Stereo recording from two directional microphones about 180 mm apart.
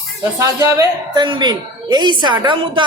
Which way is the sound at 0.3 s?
15° right (ahead or behind).